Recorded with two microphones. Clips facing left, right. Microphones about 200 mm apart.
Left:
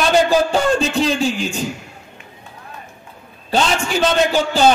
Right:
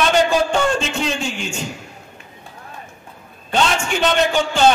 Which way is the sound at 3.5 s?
35° left (ahead or behind).